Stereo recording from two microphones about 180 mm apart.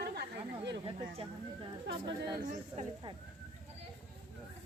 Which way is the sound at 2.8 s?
45° right (ahead or behind).